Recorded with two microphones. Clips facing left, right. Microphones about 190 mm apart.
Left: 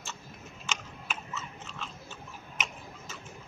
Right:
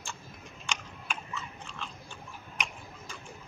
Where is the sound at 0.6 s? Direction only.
5° left (ahead or behind).